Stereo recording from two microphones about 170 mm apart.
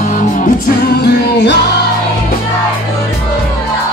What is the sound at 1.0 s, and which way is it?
Music, 85° left.